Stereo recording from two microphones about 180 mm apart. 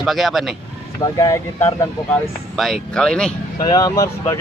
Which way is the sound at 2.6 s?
5° left (ahead or behind).